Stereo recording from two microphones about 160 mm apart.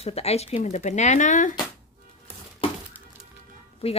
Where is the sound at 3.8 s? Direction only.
40° left (ahead or behind).